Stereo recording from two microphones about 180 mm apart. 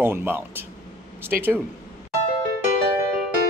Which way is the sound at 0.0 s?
10° right (ahead or behind).